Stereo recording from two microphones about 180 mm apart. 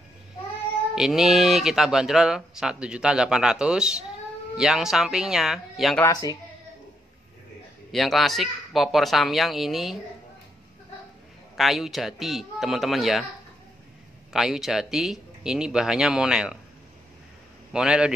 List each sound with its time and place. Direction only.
0.9 s speech: centre (ahead or behind)
7.9 s speech: centre (ahead or behind)
11.5 s speech: centre (ahead or behind)
14.3 s speech: centre (ahead or behind)
17.7 s speech: 5° right (ahead or behind)